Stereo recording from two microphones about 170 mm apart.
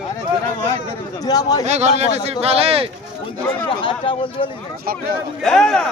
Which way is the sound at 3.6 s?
30° left (ahead or behind).